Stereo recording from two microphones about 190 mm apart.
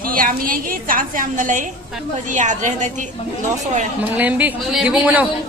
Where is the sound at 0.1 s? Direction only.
45° right (ahead or behind).